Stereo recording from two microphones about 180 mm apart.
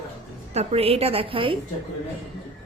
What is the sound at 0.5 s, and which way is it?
A woman's voice, 35° right (ahead or behind).